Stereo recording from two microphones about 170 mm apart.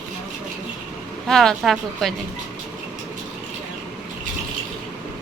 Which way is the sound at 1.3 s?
Centre (ahead or behind).